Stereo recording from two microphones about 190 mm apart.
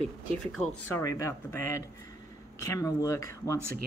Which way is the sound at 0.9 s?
15° left (ahead or behind).